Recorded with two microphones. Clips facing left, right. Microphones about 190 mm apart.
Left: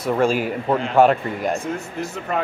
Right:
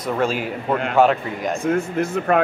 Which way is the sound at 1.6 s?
60° right (ahead or behind).